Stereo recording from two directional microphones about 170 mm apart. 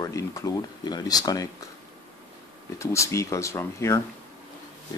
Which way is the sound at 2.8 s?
15° left (ahead or behind).